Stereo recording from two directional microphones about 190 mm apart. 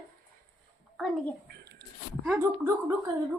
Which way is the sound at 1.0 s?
Centre (ahead or behind).